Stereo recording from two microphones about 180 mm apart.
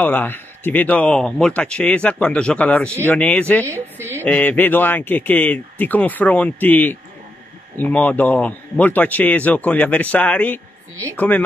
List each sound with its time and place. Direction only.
0.0 s speech: 10° left (ahead or behind)
3.6 s a woman's voice: 15° right (ahead or behind)
4.2 s speech: 10° left (ahead or behind)